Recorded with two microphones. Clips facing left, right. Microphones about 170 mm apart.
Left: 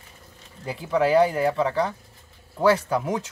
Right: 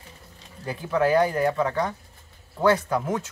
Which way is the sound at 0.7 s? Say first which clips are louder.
Left 1 dB; 10° left (ahead or behind).